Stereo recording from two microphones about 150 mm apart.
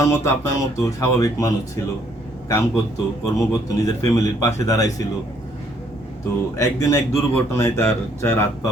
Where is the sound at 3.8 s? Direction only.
20° left (ahead or behind).